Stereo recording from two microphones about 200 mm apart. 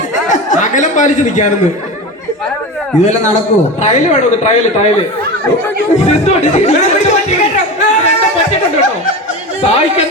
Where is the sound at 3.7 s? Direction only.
35° left (ahead or behind).